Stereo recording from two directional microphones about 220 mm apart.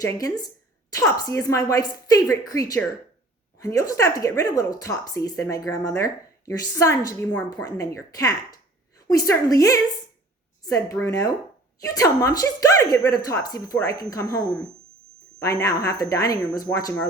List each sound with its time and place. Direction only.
0.0 s speech: 15° left (ahead or behind)
15.6 s speech: 15° left (ahead or behind)